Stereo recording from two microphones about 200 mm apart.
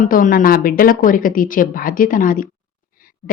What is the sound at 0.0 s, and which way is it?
A woman's voice, 45° left (ahead or behind).